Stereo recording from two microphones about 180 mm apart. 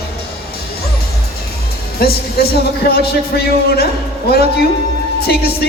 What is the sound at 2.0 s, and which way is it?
Speech, 60° left (ahead or behind).